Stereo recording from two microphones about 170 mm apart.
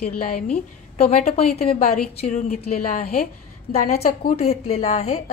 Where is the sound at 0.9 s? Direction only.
35° left (ahead or behind).